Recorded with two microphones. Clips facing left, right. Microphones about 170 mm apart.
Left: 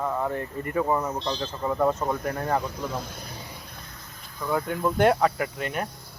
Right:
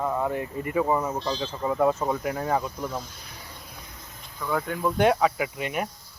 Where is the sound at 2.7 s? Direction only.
60° left (ahead or behind).